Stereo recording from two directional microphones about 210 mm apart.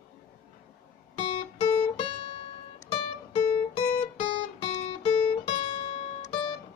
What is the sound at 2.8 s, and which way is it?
Music, 25° left (ahead or behind).